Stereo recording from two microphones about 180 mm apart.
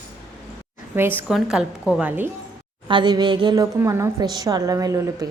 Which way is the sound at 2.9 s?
25° right (ahead or behind).